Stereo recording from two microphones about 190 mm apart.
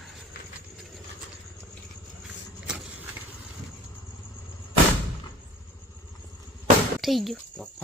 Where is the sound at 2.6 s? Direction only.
5° right (ahead or behind).